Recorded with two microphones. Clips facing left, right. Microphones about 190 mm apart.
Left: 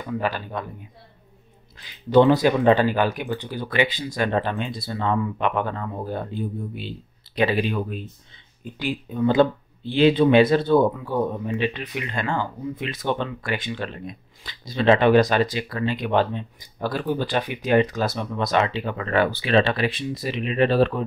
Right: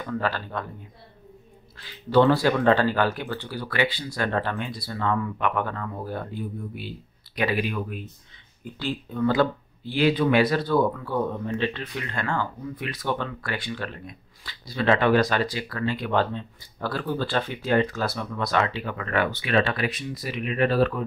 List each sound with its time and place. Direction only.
0.0 s speech: 15° left (ahead or behind)
1.8 s speech: 20° left (ahead or behind)
8.7 s speech: 15° left (ahead or behind)